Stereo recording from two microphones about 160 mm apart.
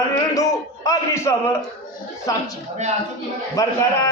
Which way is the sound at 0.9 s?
20° left (ahead or behind).